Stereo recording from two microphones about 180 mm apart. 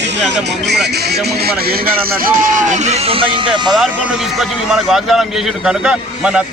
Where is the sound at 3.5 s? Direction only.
Centre (ahead or behind).